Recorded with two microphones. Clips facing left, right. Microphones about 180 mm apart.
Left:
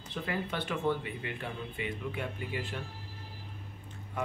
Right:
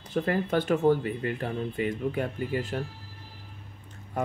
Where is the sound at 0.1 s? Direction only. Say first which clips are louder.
Right 9 dB; 45° right (ahead or behind).